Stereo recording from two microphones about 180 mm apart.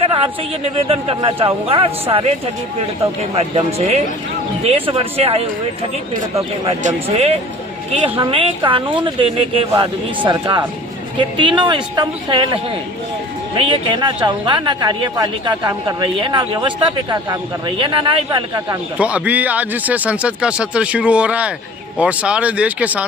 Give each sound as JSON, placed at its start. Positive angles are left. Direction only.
{"t": 0.8, "sound": "a man's voice", "side_deg": -30}
{"t": 3.3, "sound": "a man's voice", "side_deg": -35}
{"t": 6.7, "sound": "a man's voice", "side_deg": -35}
{"t": 13.6, "sound": "speech", "side_deg": -30}
{"t": 18.9, "sound": "speech", "side_deg": -5}